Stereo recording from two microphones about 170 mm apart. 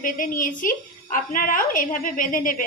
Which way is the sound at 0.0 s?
55° left (ahead or behind).